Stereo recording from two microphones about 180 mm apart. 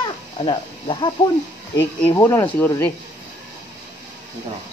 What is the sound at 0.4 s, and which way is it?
Speech, 30° left (ahead or behind).